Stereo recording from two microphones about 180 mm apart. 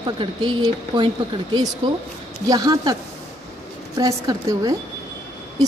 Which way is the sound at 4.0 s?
20° right (ahead or behind).